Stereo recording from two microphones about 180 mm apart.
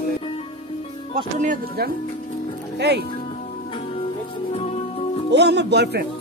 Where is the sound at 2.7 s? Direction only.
70° right (ahead or behind).